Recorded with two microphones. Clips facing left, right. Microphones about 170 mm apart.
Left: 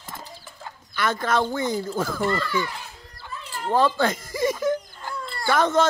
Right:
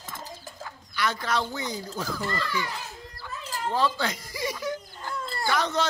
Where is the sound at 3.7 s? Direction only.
50° left (ahead or behind).